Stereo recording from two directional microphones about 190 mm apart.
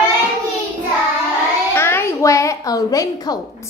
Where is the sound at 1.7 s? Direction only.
15° left (ahead or behind).